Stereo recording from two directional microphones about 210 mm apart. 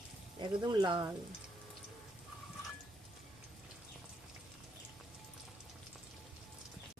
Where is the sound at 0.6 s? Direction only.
20° right (ahead or behind).